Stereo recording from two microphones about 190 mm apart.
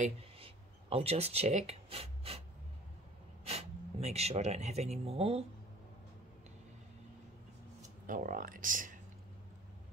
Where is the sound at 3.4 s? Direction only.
35° right (ahead or behind).